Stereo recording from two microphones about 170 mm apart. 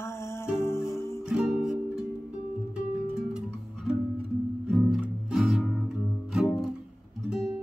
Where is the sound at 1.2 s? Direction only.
5° right (ahead or behind).